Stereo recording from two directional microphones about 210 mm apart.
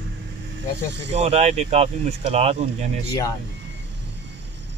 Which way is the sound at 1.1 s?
30° right (ahead or behind).